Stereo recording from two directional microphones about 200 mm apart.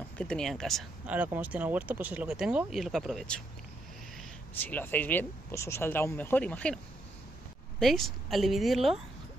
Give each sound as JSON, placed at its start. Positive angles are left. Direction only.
{"t": 0.2, "sound": "speech", "side_deg": 5}
{"t": 4.6, "sound": "speech", "side_deg": 10}
{"t": 7.8, "sound": "speech", "side_deg": 0}